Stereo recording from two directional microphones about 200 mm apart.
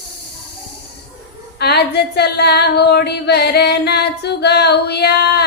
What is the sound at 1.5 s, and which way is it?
Female singing, 55° left (ahead or behind).